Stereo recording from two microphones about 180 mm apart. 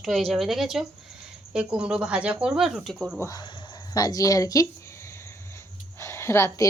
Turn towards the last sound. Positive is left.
turn(degrees=15)  # may be behind; listen again after turning